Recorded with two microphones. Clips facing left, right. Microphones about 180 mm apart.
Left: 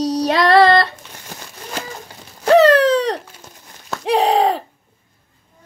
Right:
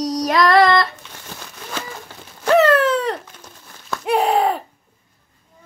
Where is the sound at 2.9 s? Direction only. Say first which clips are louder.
Left 3 dB; 80° left.